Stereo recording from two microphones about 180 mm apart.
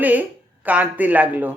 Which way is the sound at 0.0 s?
10° right (ahead or behind).